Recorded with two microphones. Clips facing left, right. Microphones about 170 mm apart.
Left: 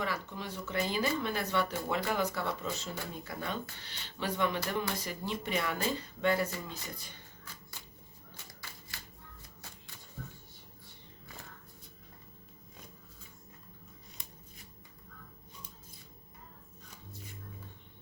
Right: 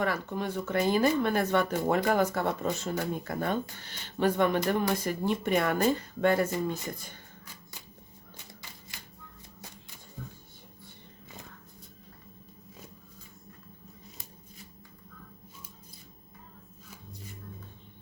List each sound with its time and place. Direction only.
0.0 s speech: 50° right (ahead or behind)